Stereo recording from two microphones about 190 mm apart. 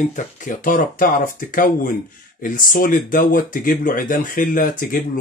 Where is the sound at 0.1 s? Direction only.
45° left (ahead or behind).